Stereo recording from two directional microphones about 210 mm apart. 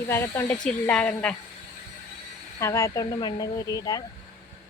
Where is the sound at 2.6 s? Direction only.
15° left (ahead or behind).